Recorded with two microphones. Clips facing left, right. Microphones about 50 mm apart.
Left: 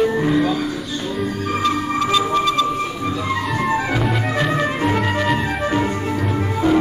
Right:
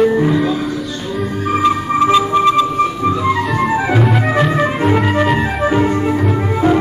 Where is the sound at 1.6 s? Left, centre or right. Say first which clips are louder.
Right 6 dB; right.